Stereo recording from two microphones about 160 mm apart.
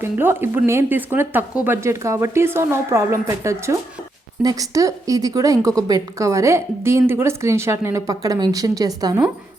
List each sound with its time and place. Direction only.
0.0 s a woman's voice: 15° right (ahead or behind)